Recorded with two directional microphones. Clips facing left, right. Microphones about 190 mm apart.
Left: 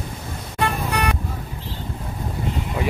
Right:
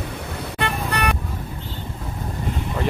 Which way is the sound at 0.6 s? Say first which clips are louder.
Left 2 dB; 65° right (ahead or behind).